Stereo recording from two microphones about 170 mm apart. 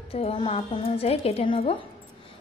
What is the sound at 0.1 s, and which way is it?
A woman's voice, 35° left (ahead or behind).